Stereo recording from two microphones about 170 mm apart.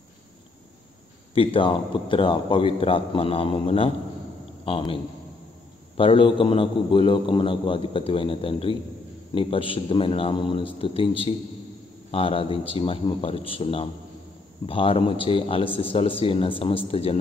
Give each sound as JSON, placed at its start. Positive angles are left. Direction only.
{"t": 1.3, "sound": "a man's voice", "side_deg": 30}
{"t": 5.9, "sound": "a man's voice", "side_deg": 30}